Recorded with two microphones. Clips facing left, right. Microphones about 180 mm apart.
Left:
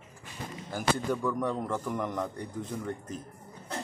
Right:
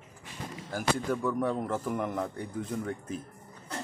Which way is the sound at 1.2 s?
5° right (ahead or behind).